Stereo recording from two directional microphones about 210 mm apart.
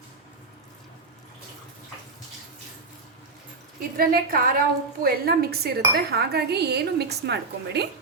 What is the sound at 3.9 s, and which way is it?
Speech, 45° right (ahead or behind).